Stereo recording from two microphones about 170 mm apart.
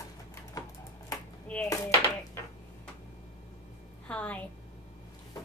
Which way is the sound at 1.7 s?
20° left (ahead or behind).